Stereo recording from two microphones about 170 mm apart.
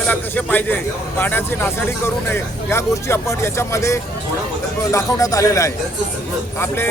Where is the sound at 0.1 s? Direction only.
10° left (ahead or behind).